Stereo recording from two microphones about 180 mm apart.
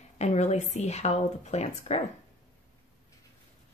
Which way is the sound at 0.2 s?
40° left (ahead or behind).